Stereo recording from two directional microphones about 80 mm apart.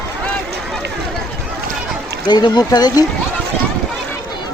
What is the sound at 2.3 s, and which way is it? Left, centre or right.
Speech, left.